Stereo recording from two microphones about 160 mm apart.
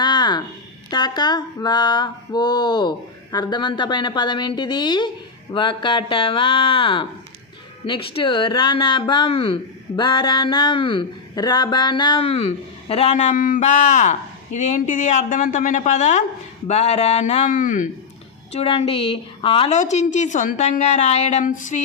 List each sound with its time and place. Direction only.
0.0 s a sound: 30° left (ahead or behind)
5.5 s a woman's voice: 30° left (ahead or behind); by 17.8 s 55° left (ahead or behind)
18.5 s speech: 40° left (ahead or behind)
19.7 s a woman's voice: 45° left (ahead or behind)